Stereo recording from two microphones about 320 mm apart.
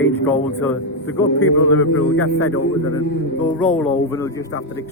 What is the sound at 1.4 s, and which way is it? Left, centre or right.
Speech, left.